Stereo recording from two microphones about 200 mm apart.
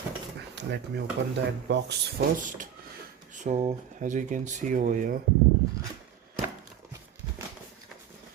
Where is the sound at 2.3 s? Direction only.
40° right (ahead or behind).